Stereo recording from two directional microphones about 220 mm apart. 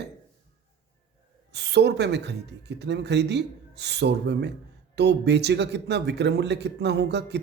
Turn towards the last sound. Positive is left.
turn(degrees=-50)  # may be behind; listen again after turning